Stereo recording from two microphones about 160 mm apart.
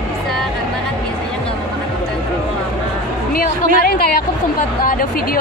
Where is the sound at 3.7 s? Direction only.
65° left (ahead or behind).